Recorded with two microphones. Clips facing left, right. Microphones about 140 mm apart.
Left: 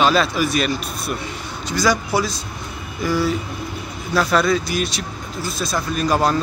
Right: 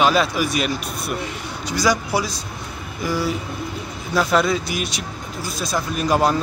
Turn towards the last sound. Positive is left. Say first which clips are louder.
# even
turn(degrees=-15)  # may be behind; listen again after turning